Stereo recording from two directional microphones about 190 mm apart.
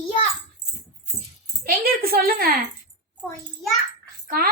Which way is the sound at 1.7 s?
50° right (ahead or behind).